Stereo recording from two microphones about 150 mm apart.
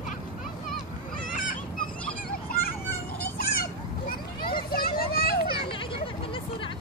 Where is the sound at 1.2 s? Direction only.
65° left (ahead or behind).